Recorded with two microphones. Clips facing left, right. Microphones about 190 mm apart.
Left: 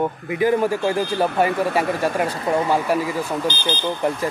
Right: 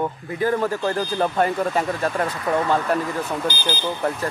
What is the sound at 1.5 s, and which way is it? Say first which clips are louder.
Speech: left 2 dB; 65° left (ahead or behind).